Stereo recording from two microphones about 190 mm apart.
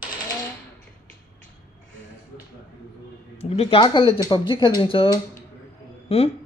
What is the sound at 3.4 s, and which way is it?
Speech, 30° left (ahead or behind).